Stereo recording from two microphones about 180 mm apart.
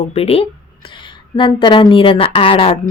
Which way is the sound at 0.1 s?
35° left (ahead or behind).